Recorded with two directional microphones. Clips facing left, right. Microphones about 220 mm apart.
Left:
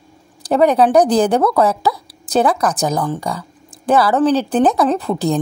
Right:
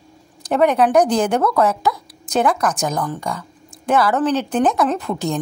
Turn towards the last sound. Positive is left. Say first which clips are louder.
# left 4 dB
turn(degrees=35)  # may be behind; listen again after turning